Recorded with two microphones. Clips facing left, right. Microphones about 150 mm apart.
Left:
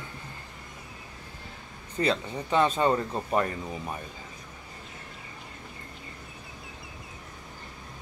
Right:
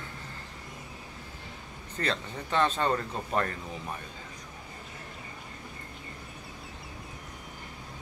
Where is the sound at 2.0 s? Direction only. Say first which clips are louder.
Left 5 dB; 10° left (ahead or behind).